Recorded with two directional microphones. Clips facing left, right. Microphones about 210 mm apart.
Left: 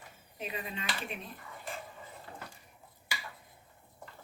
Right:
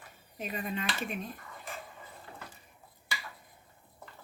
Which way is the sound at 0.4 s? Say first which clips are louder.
Right 4 dB; 45° right (ahead or behind).